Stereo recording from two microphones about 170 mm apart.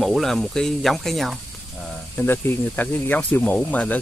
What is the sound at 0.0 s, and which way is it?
Speech, centre (ahead or behind).